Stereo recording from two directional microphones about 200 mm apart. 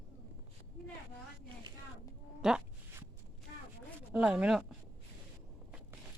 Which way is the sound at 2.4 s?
Centre (ahead or behind).